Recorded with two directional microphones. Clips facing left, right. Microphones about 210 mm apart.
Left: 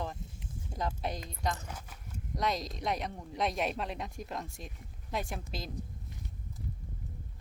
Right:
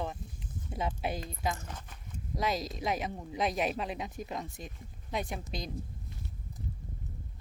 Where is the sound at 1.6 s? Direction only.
10° left (ahead or behind).